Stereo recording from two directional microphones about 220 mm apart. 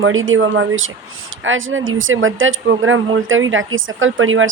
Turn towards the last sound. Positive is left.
turn(degrees=-65)  # may be behind; listen again after turning